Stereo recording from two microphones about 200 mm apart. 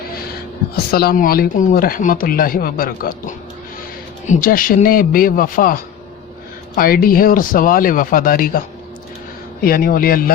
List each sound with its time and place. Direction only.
0.9 s speech: 50° left (ahead or behind)
9.6 s speech: 45° left (ahead or behind)